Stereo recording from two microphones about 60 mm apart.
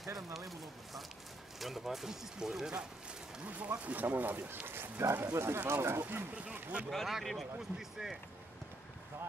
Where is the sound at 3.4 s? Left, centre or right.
Right.